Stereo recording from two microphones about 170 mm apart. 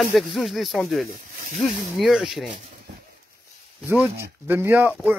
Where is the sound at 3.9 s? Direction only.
15° right (ahead or behind).